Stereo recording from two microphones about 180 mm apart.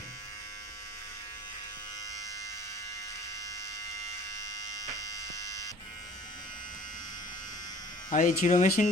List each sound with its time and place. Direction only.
8.1 s speech: 45° left (ahead or behind)